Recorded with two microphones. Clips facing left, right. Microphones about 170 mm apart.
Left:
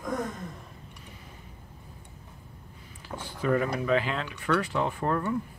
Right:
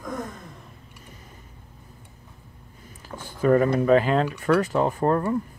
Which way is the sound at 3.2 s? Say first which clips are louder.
Right 7 dB; 45° right (ahead or behind).